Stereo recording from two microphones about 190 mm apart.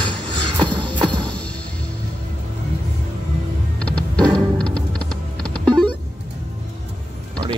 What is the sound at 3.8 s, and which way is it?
Music, 5° left (ahead or behind).